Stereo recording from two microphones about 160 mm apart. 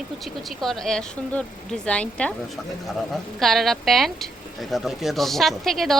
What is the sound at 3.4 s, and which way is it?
Speech, centre (ahead or behind).